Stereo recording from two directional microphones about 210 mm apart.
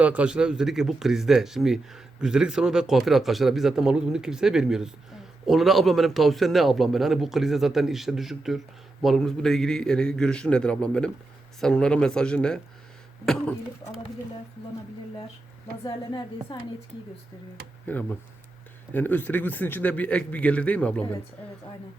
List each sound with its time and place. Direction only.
0.0 s a man's voice: 5° right (ahead or behind)
15.8 s a woman's voice: 20° left (ahead or behind)
17.8 s a man's voice: 10° left (ahead or behind)